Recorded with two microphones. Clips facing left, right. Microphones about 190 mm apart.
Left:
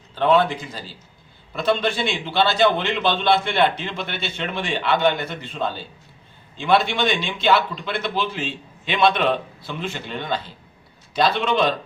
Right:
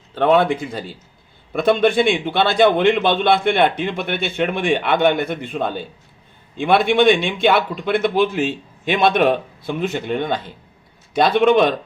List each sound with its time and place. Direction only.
0.1 s a man's voice: 55° right (ahead or behind)